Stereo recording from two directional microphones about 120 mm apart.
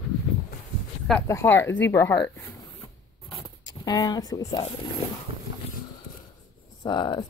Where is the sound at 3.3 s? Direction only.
40° left (ahead or behind).